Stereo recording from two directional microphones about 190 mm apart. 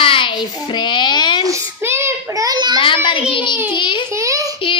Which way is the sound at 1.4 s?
15° right (ahead or behind).